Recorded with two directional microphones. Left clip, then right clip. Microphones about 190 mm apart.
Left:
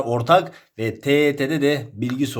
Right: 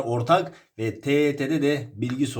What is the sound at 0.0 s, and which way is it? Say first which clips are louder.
Speech: left 5 dB; 25° left (ahead or behind).